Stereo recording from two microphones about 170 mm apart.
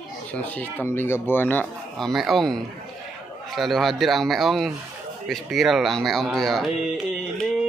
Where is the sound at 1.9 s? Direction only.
Centre (ahead or behind).